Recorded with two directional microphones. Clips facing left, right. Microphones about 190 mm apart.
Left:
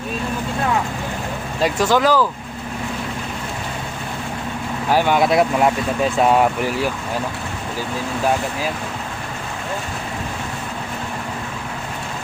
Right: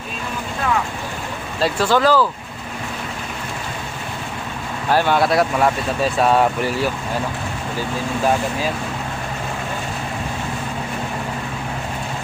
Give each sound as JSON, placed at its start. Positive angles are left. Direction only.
{"t": 1.6, "sound": "speech", "side_deg": 15}
{"t": 4.9, "sound": "speech", "side_deg": 15}